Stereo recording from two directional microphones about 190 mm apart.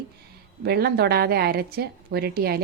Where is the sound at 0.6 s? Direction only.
55° right (ahead or behind).